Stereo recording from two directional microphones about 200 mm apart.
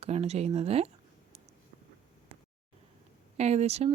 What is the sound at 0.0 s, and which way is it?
Speech, 30° right (ahead or behind).